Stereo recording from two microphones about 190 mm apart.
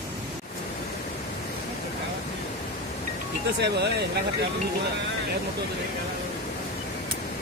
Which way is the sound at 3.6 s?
60° right (ahead or behind).